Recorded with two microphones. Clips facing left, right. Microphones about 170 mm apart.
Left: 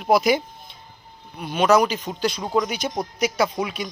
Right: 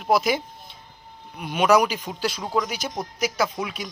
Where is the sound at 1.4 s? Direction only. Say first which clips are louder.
Left 1 dB; 10° right (ahead or behind).